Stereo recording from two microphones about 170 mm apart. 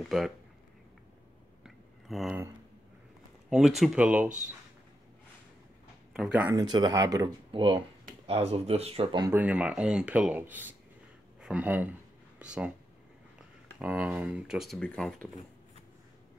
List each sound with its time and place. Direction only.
0.0 s speech: centre (ahead or behind)
1.6 s chewing: centre (ahead or behind)
3.4 s speech: 5° right (ahead or behind)
6.1 s speech: 5° right (ahead or behind)
6.5 s speech: 25° right (ahead or behind)
9.3 s speech: 10° right (ahead or behind)